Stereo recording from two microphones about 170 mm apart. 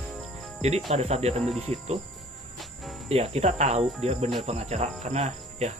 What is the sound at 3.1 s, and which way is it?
Speech, 35° right (ahead or behind).